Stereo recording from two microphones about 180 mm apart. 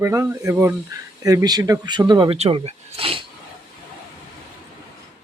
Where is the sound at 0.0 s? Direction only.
15° right (ahead or behind).